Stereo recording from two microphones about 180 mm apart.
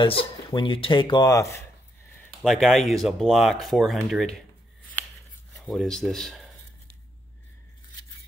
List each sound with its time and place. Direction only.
0.0 s speech: 30° left (ahead or behind)
2.2 s speech: centre (ahead or behind)
5.6 s speech: centre (ahead or behind)